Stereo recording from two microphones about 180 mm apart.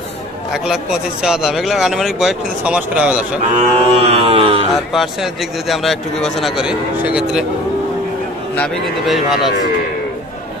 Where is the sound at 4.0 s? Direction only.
35° right (ahead or behind).